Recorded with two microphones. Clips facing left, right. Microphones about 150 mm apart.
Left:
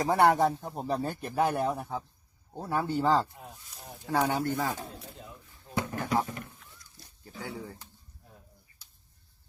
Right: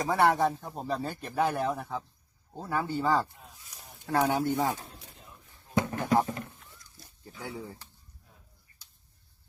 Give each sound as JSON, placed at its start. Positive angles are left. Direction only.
{"t": 0.2, "sound": "speech", "side_deg": 20}
{"t": 4.0, "sound": "speech", "side_deg": 0}
{"t": 4.3, "sound": "speech", "side_deg": -15}
{"t": 5.7, "sound": "a sound", "side_deg": -20}
{"t": 6.2, "sound": "speech", "side_deg": -30}
{"t": 7.4, "sound": "speech", "side_deg": -5}